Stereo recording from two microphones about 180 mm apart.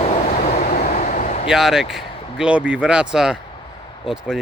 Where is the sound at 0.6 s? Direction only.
50° left (ahead or behind).